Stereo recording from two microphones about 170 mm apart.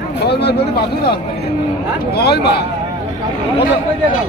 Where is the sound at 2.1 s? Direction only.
75° left (ahead or behind).